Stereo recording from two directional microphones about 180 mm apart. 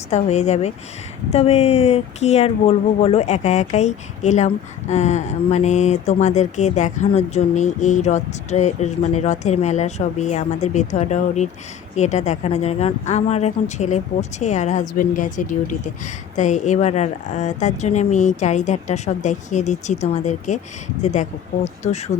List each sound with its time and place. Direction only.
0.1 s speech: 40° left (ahead or behind)